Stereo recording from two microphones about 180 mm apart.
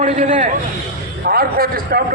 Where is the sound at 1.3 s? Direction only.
55° right (ahead or behind).